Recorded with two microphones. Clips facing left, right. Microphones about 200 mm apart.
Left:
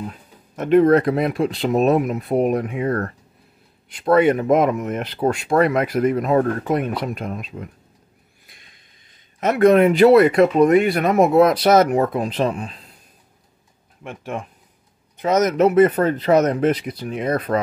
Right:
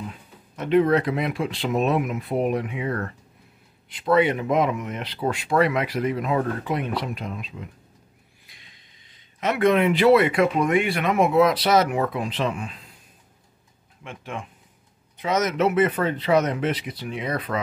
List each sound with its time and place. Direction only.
0.6 s speech: 45° left (ahead or behind)
8.5 s a sound: 50° left (ahead or behind)
9.4 s speech: 45° left (ahead or behind)
14.0 s speech: 45° left (ahead or behind)